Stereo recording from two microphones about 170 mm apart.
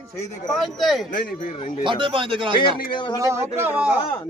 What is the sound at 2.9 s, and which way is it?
Speech, 25° left (ahead or behind).